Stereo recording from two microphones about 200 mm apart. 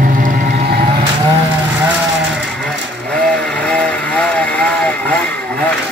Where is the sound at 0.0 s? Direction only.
40° right (ahead or behind).